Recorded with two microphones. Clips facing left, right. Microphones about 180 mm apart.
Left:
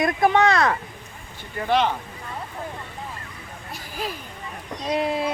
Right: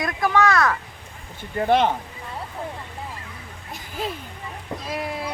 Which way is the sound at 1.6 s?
50° right (ahead or behind).